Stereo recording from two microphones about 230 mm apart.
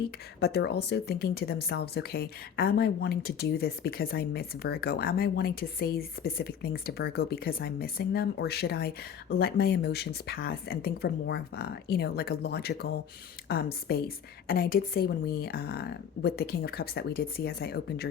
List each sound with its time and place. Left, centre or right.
0.3 s a woman's voice: left